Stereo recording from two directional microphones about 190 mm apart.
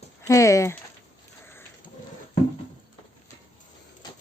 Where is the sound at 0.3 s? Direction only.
15° left (ahead or behind).